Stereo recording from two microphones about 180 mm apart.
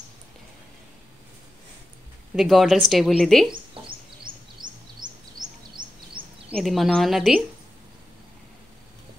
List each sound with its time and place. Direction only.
2.3 s speech: centre (ahead or behind)
4.3 s bird vocalization: 50° right (ahead or behind)
5.0 s bird vocalization: 25° right (ahead or behind)
6.5 s speech: centre (ahead or behind)